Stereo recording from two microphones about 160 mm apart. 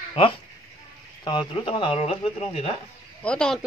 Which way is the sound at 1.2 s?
30° left (ahead or behind).